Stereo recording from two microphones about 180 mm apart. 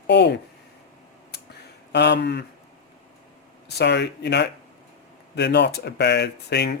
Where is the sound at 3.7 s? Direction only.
70° left (ahead or behind).